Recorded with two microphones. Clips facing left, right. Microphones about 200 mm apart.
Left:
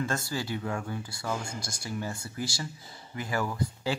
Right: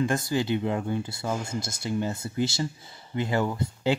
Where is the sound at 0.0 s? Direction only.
15° right (ahead or behind).